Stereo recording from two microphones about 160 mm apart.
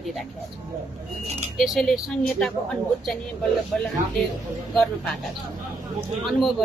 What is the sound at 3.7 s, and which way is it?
A woman's voice, 5° left (ahead or behind).